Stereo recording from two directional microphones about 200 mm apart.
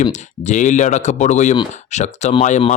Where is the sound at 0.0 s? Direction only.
35° left (ahead or behind).